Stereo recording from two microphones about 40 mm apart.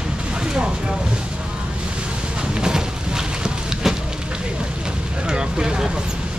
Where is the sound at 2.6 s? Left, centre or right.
Centre.